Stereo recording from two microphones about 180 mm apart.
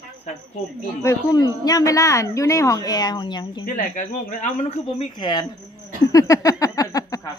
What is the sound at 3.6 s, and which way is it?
Speech, 50° left (ahead or behind).